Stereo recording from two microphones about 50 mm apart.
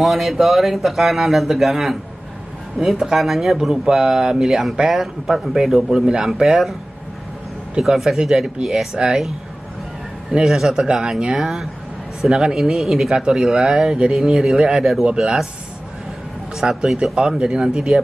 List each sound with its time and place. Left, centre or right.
0.0 s speech: centre
7.8 s speech: centre
10.3 s speech: centre
11.4 s speech: centre
13.1 s speech: centre
16.5 s speech: centre